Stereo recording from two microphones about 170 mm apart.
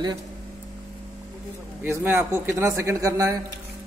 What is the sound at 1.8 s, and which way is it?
A man's voice, 15° right (ahead or behind).